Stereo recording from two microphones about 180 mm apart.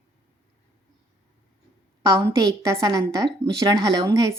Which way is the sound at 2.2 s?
15° right (ahead or behind).